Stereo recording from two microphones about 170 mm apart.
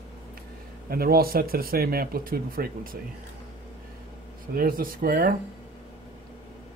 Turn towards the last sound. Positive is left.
turn(degrees=-60)  # may be behind; listen again after turning